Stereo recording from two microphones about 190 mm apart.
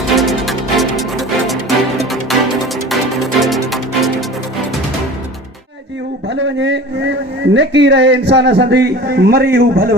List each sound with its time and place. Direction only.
0.2 s music: centre (ahead or behind)
6.2 s a man's voice: 70° right (ahead or behind)